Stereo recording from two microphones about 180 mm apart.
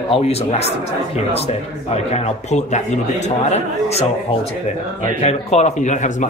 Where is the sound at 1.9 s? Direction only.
35° left (ahead or behind).